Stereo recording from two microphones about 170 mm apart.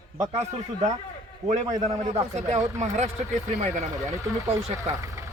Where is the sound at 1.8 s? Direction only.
40° right (ahead or behind).